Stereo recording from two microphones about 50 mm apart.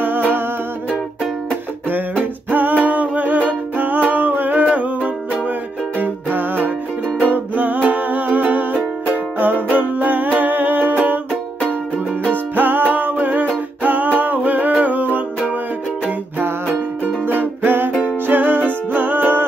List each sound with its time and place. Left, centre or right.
2.5 s music: right
8.7 s music: right
9.4 s music: right
12.3 s music: right
14.1 s humming: right
14.8 s music: right
17.3 s music: right